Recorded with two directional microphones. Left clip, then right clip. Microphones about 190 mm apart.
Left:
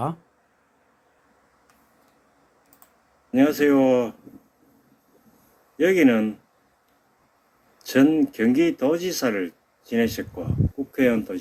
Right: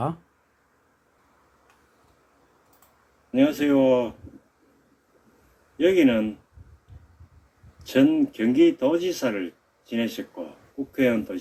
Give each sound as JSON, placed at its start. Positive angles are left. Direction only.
{"t": 3.3, "sound": "speech", "side_deg": 45}
{"t": 5.7, "sound": "speech", "side_deg": 45}
{"t": 7.9, "sound": "speech", "side_deg": 45}